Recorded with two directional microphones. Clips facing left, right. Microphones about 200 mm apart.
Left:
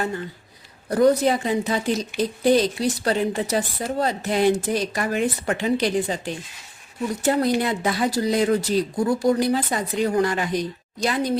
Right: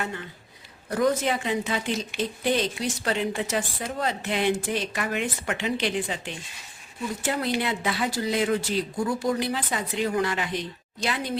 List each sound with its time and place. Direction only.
0.0 s speech: 35° left (ahead or behind)